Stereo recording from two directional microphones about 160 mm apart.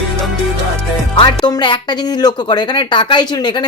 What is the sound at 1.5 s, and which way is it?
Speech, 30° left (ahead or behind).